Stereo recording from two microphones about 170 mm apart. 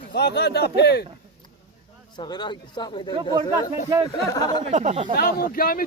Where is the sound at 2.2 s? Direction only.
25° left (ahead or behind).